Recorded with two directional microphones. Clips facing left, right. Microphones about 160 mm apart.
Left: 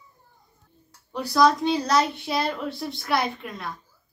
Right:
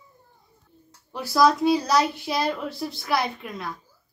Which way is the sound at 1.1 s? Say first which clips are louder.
Even; centre (ahead or behind).